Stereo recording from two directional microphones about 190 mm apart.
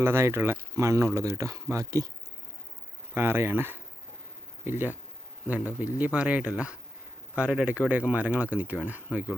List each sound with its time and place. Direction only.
0.0 s speech: 15° right (ahead or behind)
3.2 s speech: 10° right (ahead or behind)